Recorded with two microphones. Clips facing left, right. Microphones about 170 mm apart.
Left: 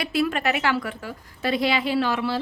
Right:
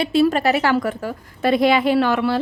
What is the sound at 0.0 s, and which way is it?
A woman's voice, 30° right (ahead or behind).